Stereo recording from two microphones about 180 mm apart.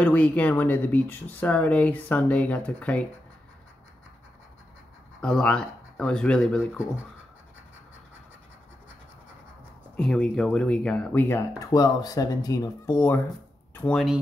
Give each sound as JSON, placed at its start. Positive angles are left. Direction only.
{"t": 0.0, "sound": "speech", "side_deg": 10}
{"t": 5.2, "sound": "speech", "side_deg": 5}
{"t": 9.9, "sound": "speech", "side_deg": 5}